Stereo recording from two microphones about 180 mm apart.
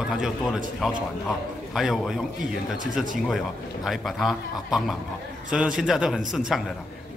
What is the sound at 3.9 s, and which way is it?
A man's voice, centre (ahead or behind).